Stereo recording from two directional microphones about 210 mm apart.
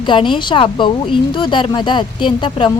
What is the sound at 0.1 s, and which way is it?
Speech, 25° left (ahead or behind).